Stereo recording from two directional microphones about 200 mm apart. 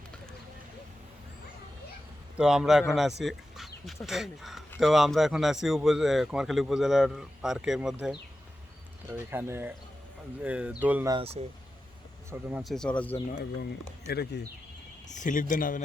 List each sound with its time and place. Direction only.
2.4 s speech: 5° right (ahead or behind)
9.1 s speech: 10° right (ahead or behind)
11.1 s speech: 30° right (ahead or behind)
12.3 s speech: 10° right (ahead or behind)
12.6 s speech: 5° left (ahead or behind)
14.1 s speech: 55° left (ahead or behind)
15.0 s speech: 40° left (ahead or behind)